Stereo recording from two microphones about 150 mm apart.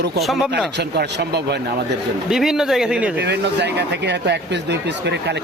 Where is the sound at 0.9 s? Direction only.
90° right.